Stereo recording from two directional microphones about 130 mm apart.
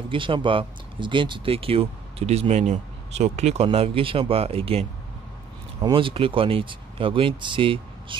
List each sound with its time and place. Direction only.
0.1 s speech: 40° right (ahead or behind); by 3.6 s 55° right (ahead or behind)
3.6 s speech: 45° right (ahead or behind)
5.8 s speech: 35° right (ahead or behind)